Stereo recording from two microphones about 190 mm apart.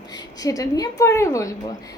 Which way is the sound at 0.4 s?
20° left (ahead or behind).